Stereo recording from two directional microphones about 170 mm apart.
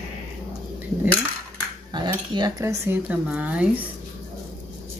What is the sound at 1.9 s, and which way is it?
Speech, 25° right (ahead or behind).